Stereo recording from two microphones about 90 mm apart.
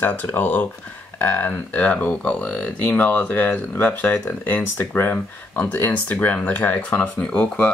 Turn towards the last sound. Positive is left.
turn(degrees=15)  # may be behind; listen again after turning